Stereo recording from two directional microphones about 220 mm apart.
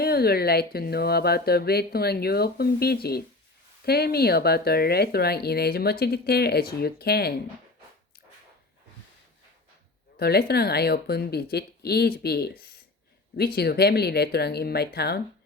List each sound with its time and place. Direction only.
0.0 s speech: 45° left (ahead or behind)
10.2 s speech: 45° left (ahead or behind)